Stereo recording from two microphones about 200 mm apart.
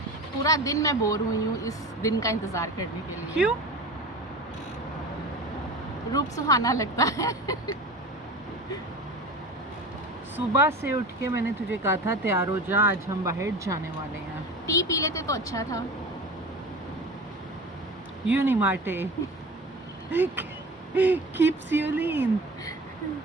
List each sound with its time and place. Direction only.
0.4 s speech: 15° left (ahead or behind)
6.1 s speech: 15° left (ahead or behind)
10.3 s speech: 10° right (ahead or behind)
14.7 s speech: 15° left (ahead or behind)
18.3 s speech: 10° right (ahead or behind)
20.1 s speech: 10° right (ahead or behind)